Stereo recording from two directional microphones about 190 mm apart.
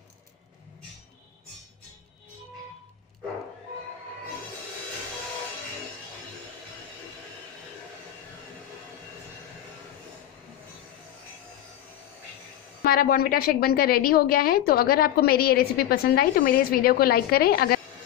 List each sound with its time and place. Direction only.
12.8 s a woman's voice: 50° left (ahead or behind)